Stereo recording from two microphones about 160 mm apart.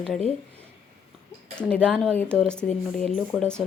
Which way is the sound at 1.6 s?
5° left (ahead or behind).